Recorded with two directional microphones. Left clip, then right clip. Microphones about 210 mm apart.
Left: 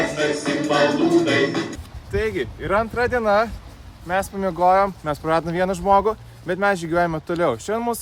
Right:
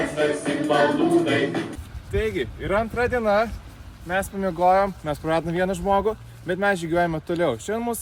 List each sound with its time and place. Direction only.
0.2 s music: 30° left (ahead or behind)
2.1 s speech: 5° left (ahead or behind)